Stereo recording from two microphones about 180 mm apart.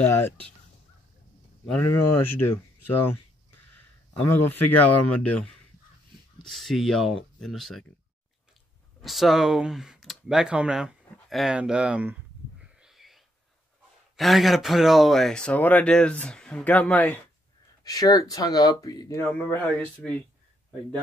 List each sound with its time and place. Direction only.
0.0 s speech: 15° left (ahead or behind)
1.7 s speech: 15° left (ahead or behind)
4.6 s speech: 10° left (ahead or behind)
9.0 s speech: centre (ahead or behind)
12.8 s a sound: centre (ahead or behind)
14.1 s speech: centre (ahead or behind)
17.8 s speech: 20° left (ahead or behind)